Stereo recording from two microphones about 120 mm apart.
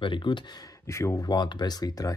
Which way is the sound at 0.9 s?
25° left (ahead or behind).